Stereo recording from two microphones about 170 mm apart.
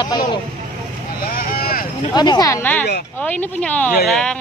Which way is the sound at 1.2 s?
60° left (ahead or behind).